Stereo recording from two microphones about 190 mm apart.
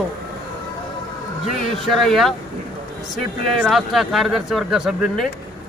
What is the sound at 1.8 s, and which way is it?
Speech, centre (ahead or behind).